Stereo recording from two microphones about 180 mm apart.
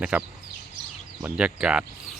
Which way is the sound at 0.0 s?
5° right (ahead or behind).